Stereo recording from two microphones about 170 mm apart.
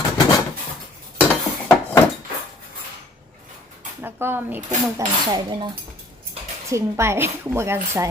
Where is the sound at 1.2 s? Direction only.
10° left (ahead or behind).